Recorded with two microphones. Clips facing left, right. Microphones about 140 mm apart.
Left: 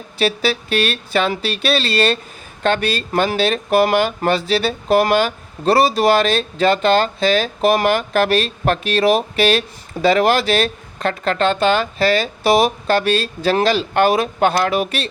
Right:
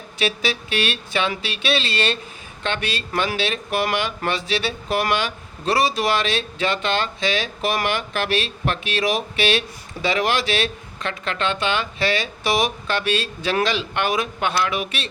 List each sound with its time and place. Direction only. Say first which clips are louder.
0.2 s speech: left 5 dB; 35° left (ahead or behind)